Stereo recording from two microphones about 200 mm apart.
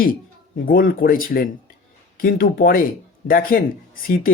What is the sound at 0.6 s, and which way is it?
Speech, 45° left (ahead or behind).